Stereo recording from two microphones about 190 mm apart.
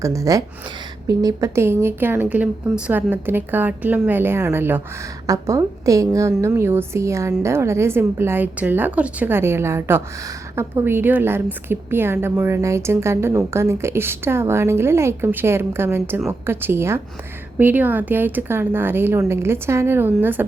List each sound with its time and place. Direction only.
0.0 s a woman's voice: 15° right (ahead or behind)